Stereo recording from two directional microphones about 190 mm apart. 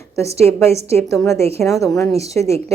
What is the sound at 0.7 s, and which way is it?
Speech, 35° right (ahead or behind).